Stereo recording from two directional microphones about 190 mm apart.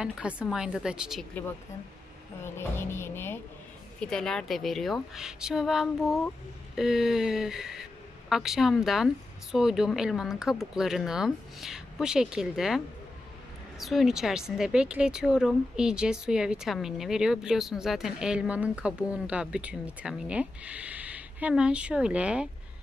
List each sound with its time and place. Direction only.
0.0 s speech: 5° right (ahead or behind)
2.4 s speech: 15° left (ahead or behind); by 22.5 s 5° right (ahead or behind)